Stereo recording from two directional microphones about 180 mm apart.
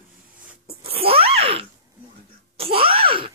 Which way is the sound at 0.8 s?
30° right (ahead or behind).